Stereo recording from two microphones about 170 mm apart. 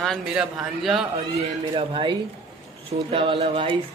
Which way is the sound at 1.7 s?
30° right (ahead or behind).